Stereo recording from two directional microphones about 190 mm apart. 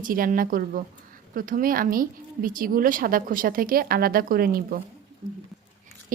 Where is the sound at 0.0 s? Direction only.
45° right (ahead or behind).